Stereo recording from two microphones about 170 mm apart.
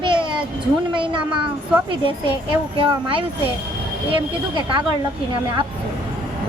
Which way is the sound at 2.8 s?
30° right (ahead or behind).